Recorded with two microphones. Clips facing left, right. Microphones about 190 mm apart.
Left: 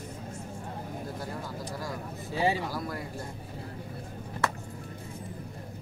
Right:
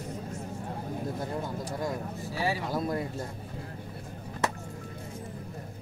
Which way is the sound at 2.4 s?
20° left (ahead or behind).